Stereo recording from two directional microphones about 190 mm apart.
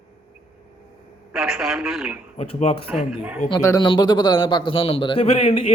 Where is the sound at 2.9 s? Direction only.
5° right (ahead or behind).